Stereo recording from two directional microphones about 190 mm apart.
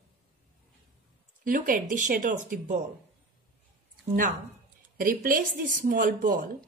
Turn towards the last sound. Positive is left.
turn(degrees=-50)  # may be behind; listen again after turning